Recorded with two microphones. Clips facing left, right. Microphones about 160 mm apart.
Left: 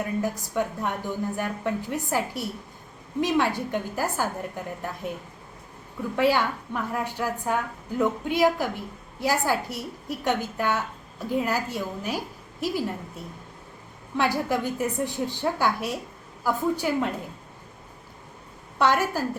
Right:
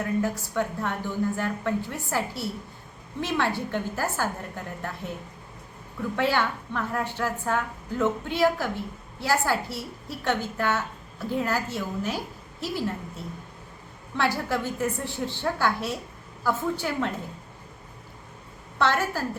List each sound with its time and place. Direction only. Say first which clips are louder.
0.0 s a woman's voice: right 1 dB; 15° left (ahead or behind)
6.1 s a woman's voice: left 3 dB; 10° left (ahead or behind)
14.2 s a woman's voice: left 2 dB; 15° left (ahead or behind)
18.8 s a woman's voice: left 2 dB; 15° left (ahead or behind)